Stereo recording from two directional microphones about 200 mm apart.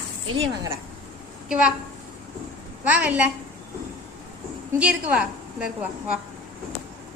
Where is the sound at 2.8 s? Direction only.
5° right (ahead or behind).